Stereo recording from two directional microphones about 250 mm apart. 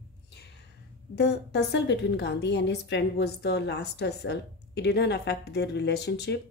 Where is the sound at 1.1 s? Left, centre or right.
Left.